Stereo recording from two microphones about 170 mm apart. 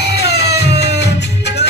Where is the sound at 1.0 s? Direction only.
90° left.